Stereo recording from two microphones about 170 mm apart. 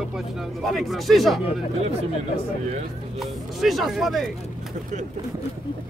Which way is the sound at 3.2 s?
Centre (ahead or behind).